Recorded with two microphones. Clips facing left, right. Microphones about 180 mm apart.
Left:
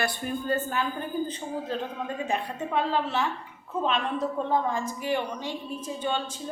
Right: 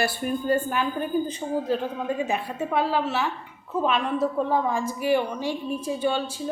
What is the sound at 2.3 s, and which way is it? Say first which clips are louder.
A woman's voice: right 2 dB; 5° right (ahead or behind).